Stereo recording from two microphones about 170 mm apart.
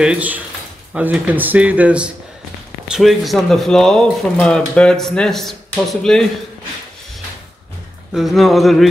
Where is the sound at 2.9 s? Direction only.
Centre (ahead or behind).